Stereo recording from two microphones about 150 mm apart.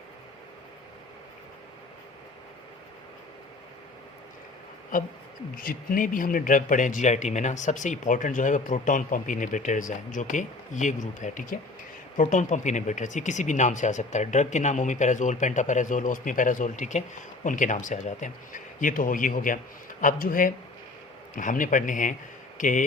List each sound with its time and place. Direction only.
4.9 s speech: 65° left (ahead or behind)